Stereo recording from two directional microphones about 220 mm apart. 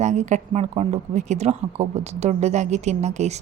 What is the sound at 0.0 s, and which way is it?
A woman's voice, 30° right (ahead or behind).